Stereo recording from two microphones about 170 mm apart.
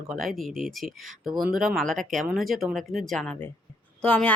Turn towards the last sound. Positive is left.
turn(degrees=5)  # may be behind; listen again after turning